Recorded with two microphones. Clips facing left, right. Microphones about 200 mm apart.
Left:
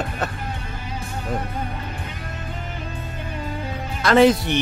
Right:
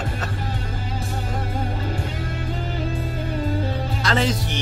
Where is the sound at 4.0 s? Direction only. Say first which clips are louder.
Left 9 dB; 55° left (ahead or behind).